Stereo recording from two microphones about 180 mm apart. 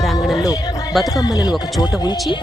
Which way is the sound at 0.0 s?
Centre (ahead or behind).